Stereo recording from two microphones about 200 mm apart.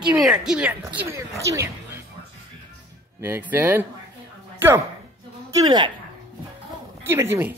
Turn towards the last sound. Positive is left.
turn(degrees=-10)  # may be behind; listen again after turning